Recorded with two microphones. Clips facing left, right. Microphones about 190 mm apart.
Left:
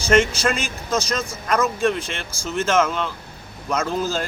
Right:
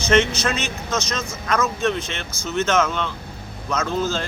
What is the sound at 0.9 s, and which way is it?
Speech, 35° left (ahead or behind).